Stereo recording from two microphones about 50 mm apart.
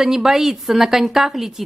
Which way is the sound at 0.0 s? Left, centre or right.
Centre.